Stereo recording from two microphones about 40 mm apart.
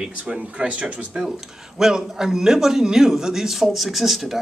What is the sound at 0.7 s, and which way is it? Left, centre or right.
Speech, right.